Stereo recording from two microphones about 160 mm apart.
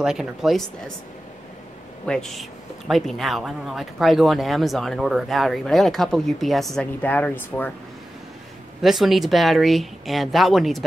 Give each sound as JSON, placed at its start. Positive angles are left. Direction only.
{"t": 0.0, "sound": "speech", "side_deg": -5}
{"t": 2.0, "sound": "speech", "side_deg": 5}
{"t": 8.8, "sound": "speech", "side_deg": 0}